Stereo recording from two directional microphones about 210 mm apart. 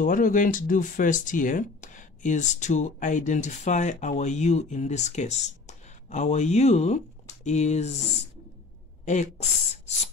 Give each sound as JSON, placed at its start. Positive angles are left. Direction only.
{"t": 0.0, "sound": "speech", "side_deg": 40}
{"t": 9.0, "sound": "speech", "side_deg": 35}